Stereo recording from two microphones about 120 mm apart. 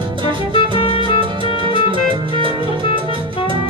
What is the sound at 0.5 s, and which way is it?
Music, 50° left (ahead or behind).